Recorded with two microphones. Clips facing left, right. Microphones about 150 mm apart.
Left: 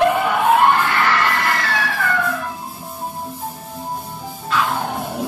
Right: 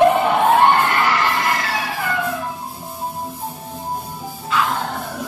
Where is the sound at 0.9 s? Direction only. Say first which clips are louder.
Even; 15° right (ahead or behind).